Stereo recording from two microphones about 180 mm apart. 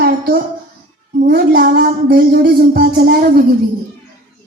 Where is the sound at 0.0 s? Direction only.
55° right (ahead or behind).